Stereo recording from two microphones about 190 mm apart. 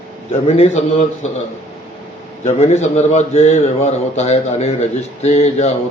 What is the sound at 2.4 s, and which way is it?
A man's voice, 35° left (ahead or behind).